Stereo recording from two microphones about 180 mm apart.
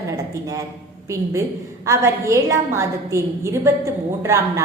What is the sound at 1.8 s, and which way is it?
A woman's voice, 15° right (ahead or behind).